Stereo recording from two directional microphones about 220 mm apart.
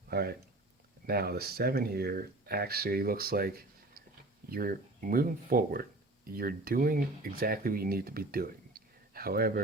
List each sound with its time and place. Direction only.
0.1 s speech: 45° right (ahead or behind)